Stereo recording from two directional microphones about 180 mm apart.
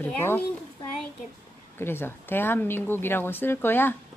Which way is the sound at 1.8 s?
10° left (ahead or behind).